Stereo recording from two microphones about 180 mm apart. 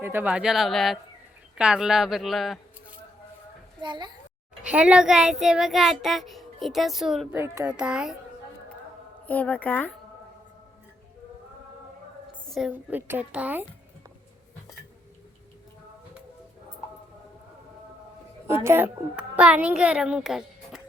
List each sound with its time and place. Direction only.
0.0 s a child's voice: 10° right (ahead or behind)
3.8 s a child's voice: 25° right (ahead or behind)
4.6 s a child's voice: 5° right (ahead or behind)
7.3 s a woman's voice: 15° right (ahead or behind)
9.2 s speech: 10° left (ahead or behind)
12.5 s a woman's voice: 5° right (ahead or behind)
18.6 s a child's voice: 10° right (ahead or behind)